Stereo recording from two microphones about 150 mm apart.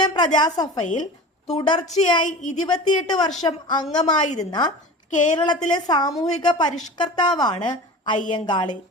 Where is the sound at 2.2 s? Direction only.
55° left (ahead or behind).